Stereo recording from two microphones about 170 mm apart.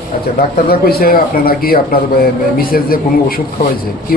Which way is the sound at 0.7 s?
65° left (ahead or behind).